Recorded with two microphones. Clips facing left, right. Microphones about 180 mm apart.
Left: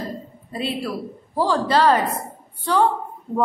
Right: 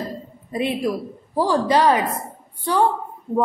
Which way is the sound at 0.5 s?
15° right (ahead or behind).